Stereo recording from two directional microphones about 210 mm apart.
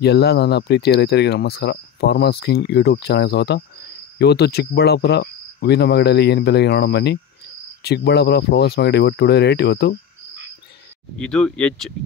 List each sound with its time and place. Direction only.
0.0 s speech: 50° left (ahead or behind)
11.1 s speech: 5° left (ahead or behind)